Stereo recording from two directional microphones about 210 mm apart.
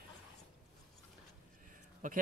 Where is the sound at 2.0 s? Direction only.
40° right (ahead or behind).